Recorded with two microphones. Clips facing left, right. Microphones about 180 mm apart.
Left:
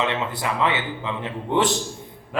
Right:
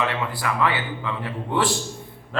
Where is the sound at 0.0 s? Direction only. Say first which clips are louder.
Left 1 dB; 20° left (ahead or behind).